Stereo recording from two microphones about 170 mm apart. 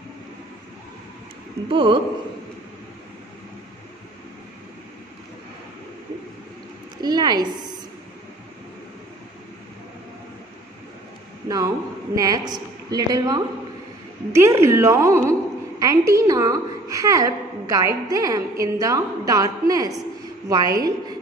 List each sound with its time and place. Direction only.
1.7 s a woman's voice: 30° right (ahead or behind)
7.0 s a sound: 25° right (ahead or behind)
11.4 s a woman's voice: 20° right (ahead or behind)